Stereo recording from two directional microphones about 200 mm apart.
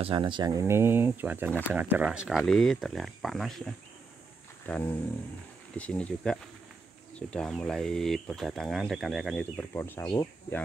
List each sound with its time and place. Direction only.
0.0 s speech: 25° right (ahead or behind); by 3.6 s centre (ahead or behind)
4.7 s a sound: 5° left (ahead or behind)
5.8 s speech: 5° left (ahead or behind)